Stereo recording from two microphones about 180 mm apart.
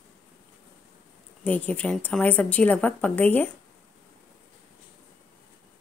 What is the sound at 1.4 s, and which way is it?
A woman's voice, 10° left (ahead or behind).